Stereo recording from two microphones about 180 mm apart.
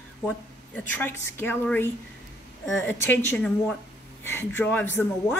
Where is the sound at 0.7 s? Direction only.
10° left (ahead or behind).